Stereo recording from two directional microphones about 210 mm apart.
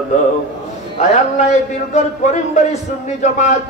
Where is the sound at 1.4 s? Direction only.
35° left (ahead or behind).